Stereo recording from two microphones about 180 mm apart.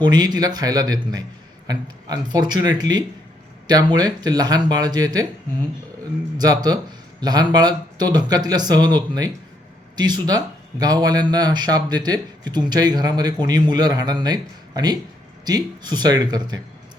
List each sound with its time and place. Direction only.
0.0 s a man's voice: 25° right (ahead or behind)
6.3 s a man's voice: 20° right (ahead or behind)